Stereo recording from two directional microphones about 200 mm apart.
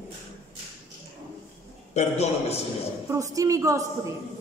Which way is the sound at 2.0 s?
35° left (ahead or behind).